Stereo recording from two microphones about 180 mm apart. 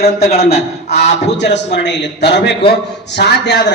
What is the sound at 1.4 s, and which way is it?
A man's voice, 70° left (ahead or behind).